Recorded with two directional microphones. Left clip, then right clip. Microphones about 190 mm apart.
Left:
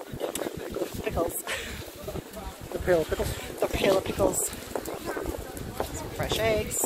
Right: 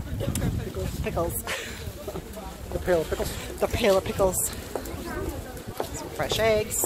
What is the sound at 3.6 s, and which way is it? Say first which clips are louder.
Speech: right 2 dB; 20° right (ahead or behind).